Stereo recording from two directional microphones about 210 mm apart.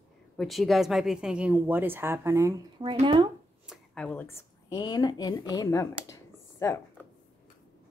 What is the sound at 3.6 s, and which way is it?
Speech, 5° left (ahead or behind).